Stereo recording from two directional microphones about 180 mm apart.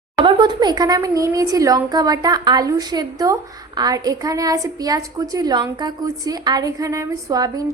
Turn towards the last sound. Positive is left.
turn(degrees=-20)  # may be behind; listen again after turning